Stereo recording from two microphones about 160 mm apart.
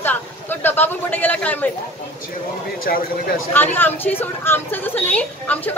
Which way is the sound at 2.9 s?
75° left (ahead or behind).